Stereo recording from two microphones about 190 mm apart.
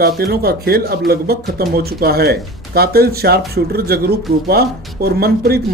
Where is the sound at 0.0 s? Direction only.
55° right (ahead or behind).